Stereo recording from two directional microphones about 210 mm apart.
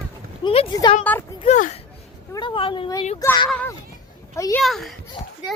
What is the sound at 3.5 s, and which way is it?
Speech, 5° left (ahead or behind).